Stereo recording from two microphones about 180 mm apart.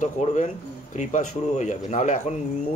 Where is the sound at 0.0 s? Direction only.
40° left (ahead or behind).